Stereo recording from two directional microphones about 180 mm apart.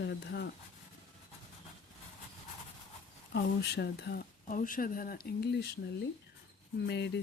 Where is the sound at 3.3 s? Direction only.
65° left (ahead or behind).